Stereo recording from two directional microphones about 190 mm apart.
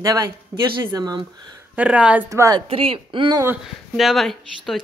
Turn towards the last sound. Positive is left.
turn(degrees=0)  # may be behind; listen again after turning